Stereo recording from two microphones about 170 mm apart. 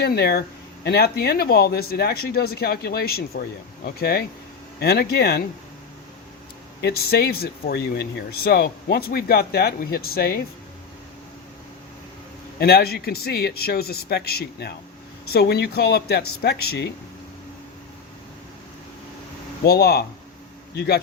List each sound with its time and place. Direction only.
0.0 s speech: 65° left (ahead or behind)
6.8 s speech: 65° left (ahead or behind)
12.5 s speech: 70° left (ahead or behind)
19.6 s speech: 70° left (ahead or behind)